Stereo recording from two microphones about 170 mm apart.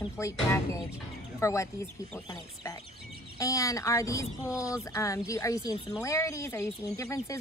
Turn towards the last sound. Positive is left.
turn(degrees=20)  # may be behind; listen again after turning